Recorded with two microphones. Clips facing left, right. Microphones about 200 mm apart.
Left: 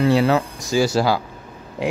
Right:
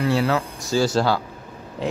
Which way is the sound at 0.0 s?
20° left (ahead or behind).